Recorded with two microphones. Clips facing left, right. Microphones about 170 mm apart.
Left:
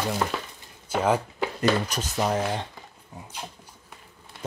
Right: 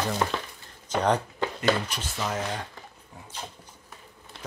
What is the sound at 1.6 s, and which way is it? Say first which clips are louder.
Speech: left 3 dB; 40° left (ahead or behind).